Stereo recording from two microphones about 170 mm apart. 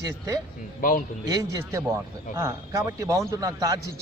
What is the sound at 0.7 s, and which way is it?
Speech, 55° left (ahead or behind).